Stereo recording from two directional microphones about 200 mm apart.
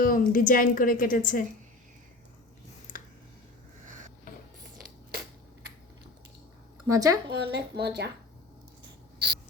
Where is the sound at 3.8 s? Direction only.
40° right (ahead or behind).